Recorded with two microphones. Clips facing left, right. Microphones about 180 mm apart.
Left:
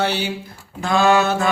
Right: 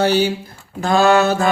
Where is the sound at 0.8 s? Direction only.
40° right (ahead or behind).